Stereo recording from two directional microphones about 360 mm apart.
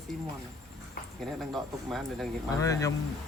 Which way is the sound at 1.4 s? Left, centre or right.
Centre.